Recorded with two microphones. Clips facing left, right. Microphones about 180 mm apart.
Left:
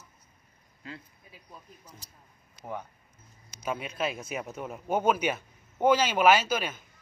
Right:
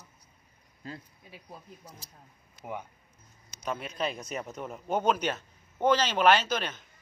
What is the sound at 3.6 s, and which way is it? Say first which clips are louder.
Speech: left 1 dB; 5° left (ahead or behind).